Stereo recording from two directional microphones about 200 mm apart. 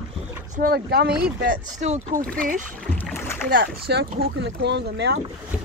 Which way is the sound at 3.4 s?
50° right (ahead or behind).